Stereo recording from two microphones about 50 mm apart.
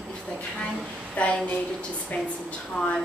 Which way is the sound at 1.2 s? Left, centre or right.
Left.